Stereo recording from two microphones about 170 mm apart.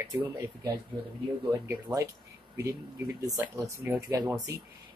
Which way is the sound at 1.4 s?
20° right (ahead or behind).